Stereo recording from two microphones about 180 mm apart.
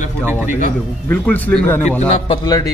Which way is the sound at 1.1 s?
10° left (ahead or behind).